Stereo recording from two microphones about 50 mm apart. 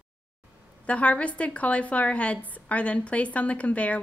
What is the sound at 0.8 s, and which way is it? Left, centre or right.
A woman's voice, left.